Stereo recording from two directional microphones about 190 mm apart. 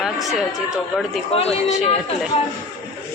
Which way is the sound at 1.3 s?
30° left (ahead or behind).